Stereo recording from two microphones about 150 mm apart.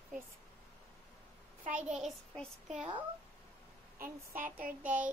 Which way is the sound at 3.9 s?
65° right (ahead or behind).